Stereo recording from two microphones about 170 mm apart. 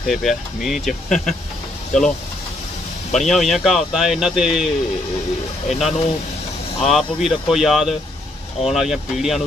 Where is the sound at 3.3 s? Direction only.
Centre (ahead or behind).